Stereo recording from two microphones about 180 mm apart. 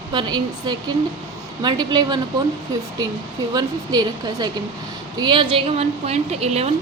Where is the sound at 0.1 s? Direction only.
25° right (ahead or behind).